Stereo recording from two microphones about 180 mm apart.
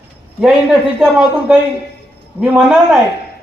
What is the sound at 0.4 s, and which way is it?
A man's voice, 5° right (ahead or behind).